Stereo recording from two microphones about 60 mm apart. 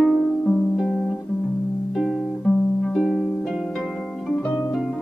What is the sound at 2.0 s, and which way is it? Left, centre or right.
Music, centre.